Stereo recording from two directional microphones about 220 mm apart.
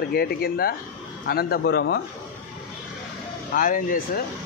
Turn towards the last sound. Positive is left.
turn(degrees=40)  # may be behind; listen again after turning